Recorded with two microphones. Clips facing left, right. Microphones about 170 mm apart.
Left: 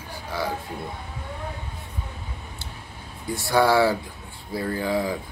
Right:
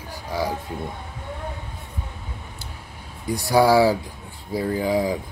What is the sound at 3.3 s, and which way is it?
Speech, 15° right (ahead or behind).